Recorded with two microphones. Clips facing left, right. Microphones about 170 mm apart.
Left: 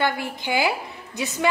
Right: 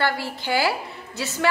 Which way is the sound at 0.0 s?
15° left (ahead or behind).